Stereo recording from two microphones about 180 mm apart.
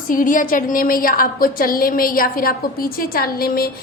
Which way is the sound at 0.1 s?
50° left (ahead or behind).